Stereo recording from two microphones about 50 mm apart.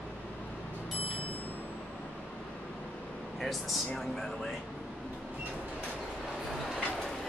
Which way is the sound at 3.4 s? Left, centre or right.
Centre.